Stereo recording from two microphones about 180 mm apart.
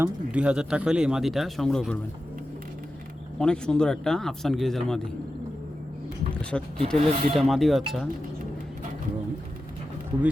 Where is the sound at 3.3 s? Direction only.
5° left (ahead or behind).